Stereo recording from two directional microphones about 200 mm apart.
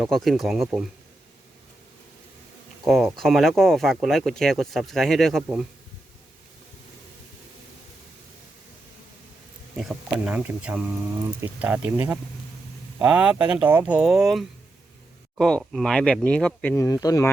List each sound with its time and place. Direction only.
0.0 s speech: centre (ahead or behind)
2.8 s speech: centre (ahead or behind)
9.7 s speech: 5° right (ahead or behind); by 17.3 s 15° left (ahead or behind)